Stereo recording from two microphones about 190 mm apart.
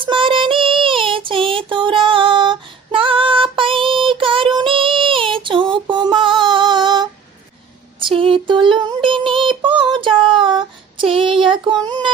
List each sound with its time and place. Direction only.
0.0 s child singing: 25° right (ahead or behind)
4.5 s female singing: 25° right (ahead or behind)
7.9 s child singing: 25° right (ahead or behind)